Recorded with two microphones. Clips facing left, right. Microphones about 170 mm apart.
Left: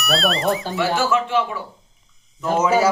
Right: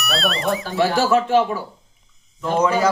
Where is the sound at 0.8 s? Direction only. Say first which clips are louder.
Right 6 dB; 35° right (ahead or behind).